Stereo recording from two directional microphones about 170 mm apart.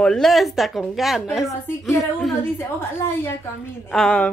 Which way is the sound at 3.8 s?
5° left (ahead or behind).